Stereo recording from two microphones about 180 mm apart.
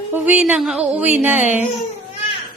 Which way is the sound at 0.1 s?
10° right (ahead or behind).